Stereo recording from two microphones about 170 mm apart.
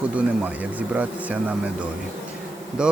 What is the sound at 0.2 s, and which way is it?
Speech, 10° right (ahead or behind).